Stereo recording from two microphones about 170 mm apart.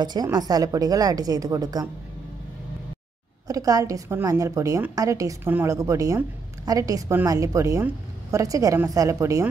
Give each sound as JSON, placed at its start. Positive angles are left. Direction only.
{"t": 0.0, "sound": "a woman's voice", "side_deg": -25}
{"t": 3.4, "sound": "a woman's voice", "side_deg": -20}